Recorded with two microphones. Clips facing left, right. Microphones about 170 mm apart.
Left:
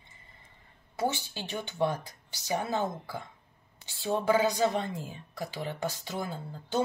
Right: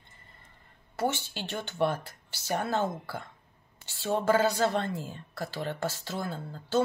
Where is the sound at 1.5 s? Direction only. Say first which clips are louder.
Right 1 dB; 15° left (ahead or behind).